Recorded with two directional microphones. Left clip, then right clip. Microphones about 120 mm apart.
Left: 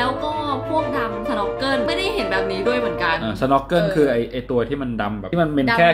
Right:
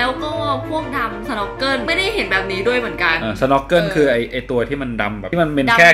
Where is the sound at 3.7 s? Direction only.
5° right (ahead or behind).